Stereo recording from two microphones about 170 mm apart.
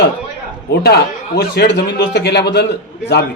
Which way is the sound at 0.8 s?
70° left (ahead or behind).